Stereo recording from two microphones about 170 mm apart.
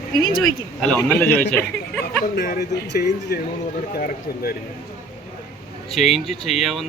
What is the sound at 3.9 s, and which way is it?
Speech, 65° left (ahead or behind).